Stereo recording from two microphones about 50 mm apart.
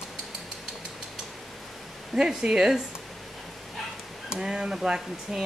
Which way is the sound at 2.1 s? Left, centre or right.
Centre.